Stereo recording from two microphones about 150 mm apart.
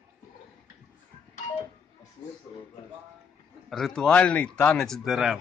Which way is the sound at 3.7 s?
Centre (ahead or behind).